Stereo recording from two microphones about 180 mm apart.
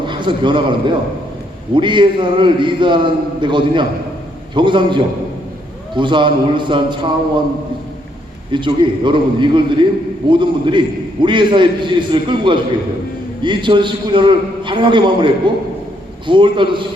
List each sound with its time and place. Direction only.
0.0 s a man's voice: 25° right (ahead or behind)
8.5 s a man's voice: 25° right (ahead or behind)